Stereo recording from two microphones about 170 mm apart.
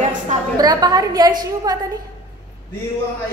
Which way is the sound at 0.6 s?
25° right (ahead or behind).